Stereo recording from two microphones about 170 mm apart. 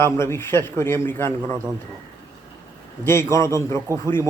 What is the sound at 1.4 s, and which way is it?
Speech, 25° right (ahead or behind).